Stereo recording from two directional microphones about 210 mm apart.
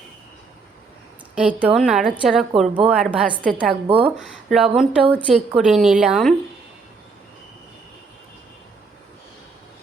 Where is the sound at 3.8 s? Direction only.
25° right (ahead or behind).